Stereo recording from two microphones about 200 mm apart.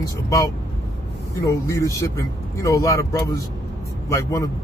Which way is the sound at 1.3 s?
15° left (ahead or behind).